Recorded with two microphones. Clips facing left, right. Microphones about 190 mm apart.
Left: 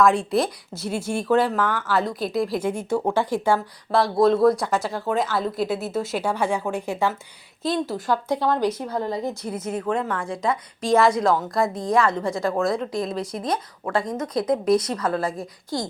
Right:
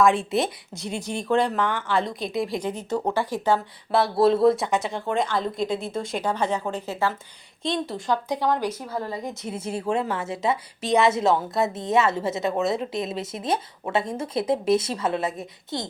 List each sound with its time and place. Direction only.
0.0 s a woman's voice: centre (ahead or behind)
3.9 s speech: 5° right (ahead or behind)
4.3 s speech: 25° right (ahead or behind)
4.9 s a woman's voice: centre (ahead or behind)
7.6 s speech: 5° left (ahead or behind)
8.0 s speech: 15° right (ahead or behind)
9.3 s speech: 20° right (ahead or behind)